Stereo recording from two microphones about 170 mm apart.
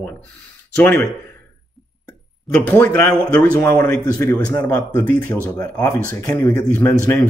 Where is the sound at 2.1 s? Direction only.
10° left (ahead or behind).